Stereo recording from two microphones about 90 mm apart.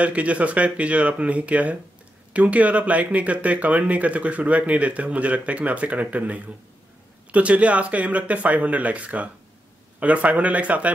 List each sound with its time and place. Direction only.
0.0 s speech: 15° right (ahead or behind)